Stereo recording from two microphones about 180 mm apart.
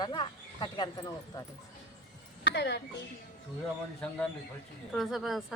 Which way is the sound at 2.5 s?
70° left (ahead or behind).